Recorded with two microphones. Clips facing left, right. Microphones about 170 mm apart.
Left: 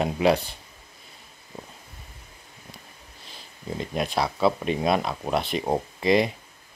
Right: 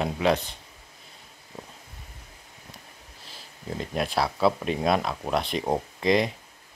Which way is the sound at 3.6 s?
Centre (ahead or behind).